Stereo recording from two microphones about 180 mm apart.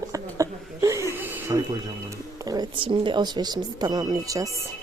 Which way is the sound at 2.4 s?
20° right (ahead or behind).